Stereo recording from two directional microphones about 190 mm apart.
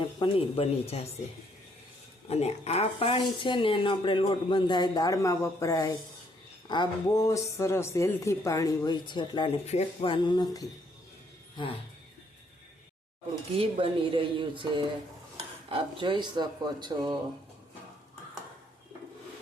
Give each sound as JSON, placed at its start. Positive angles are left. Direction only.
{"t": 0.0, "sound": "speech", "side_deg": 30}
{"t": 2.2, "sound": "speech", "side_deg": 35}
{"t": 13.6, "sound": "speech", "side_deg": -30}
{"t": 16.0, "sound": "speech", "side_deg": -25}